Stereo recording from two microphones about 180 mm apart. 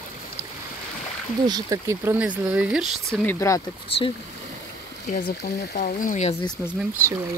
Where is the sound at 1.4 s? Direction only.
20° right (ahead or behind).